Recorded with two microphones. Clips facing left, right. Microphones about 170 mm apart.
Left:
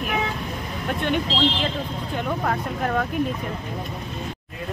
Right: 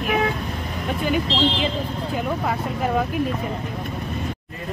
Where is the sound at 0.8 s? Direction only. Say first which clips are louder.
Right 1 dB; 5° right (ahead or behind).